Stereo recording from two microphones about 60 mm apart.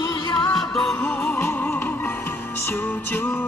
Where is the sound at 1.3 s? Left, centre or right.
Left.